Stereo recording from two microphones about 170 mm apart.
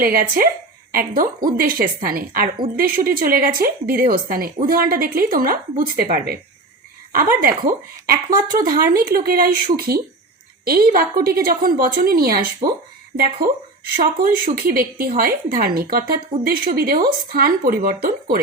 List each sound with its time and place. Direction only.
0.0 s a woman's voice: 55° right (ahead or behind)